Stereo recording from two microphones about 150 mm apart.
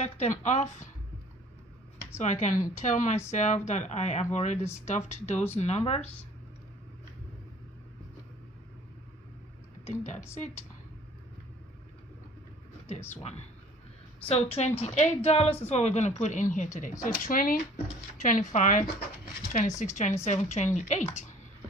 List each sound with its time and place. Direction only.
0.0 s speech: 50° left (ahead or behind)
2.2 s speech: 55° left (ahead or behind)
14.2 s speech: 40° left (ahead or behind)
17.0 s speech: 70° left (ahead or behind); by 21.4 s 50° left (ahead or behind)